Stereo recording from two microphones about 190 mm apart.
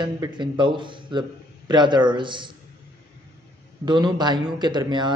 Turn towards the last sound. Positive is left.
turn(degrees=-25)  # may be behind; listen again after turning